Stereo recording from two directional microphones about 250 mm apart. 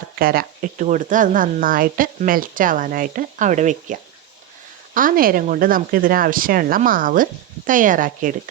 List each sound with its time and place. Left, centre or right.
0.2 s speech: right
4.9 s speech: right